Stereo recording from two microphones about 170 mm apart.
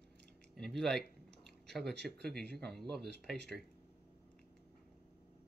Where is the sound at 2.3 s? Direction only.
70° right (ahead or behind).